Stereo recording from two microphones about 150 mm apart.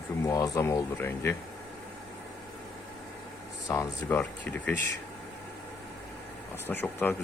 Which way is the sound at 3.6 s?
20° left (ahead or behind).